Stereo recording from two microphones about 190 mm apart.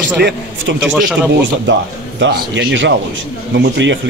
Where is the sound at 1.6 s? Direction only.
70° right (ahead or behind).